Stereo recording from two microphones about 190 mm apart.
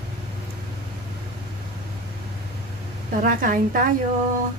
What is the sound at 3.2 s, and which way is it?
Speech, 45° right (ahead or behind).